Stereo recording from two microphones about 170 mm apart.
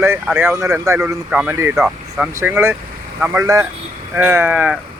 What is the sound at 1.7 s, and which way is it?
Speech, centre (ahead or behind).